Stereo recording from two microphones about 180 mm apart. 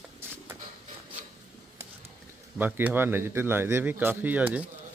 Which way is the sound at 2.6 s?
10° right (ahead or behind).